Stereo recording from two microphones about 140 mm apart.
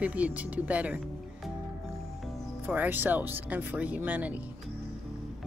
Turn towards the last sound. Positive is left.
turn(degrees=-10)  # may be behind; listen again after turning